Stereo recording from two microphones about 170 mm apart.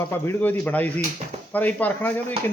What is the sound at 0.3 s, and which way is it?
A man's voice, 10° left (ahead or behind).